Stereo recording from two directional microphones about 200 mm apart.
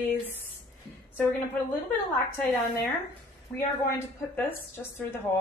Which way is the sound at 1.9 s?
10° left (ahead or behind).